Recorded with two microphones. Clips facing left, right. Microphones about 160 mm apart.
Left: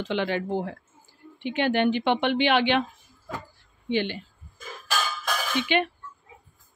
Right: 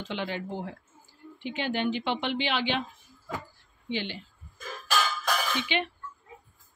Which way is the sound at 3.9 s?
55° left (ahead or behind).